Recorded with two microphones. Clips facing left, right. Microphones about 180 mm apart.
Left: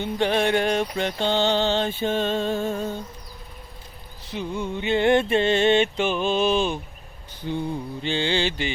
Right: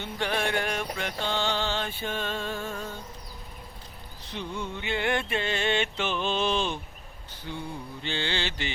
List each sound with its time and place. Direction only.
0.0 s music: 20° left (ahead or behind)
4.3 s mantra: 10° left (ahead or behind)
4.8 s music: 25° left (ahead or behind)
7.4 s music: 25° left (ahead or behind)
8.0 s mantra: 15° left (ahead or behind)